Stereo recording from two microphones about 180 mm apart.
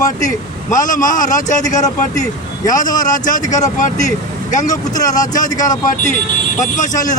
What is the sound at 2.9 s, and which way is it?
Speech, 20° left (ahead or behind).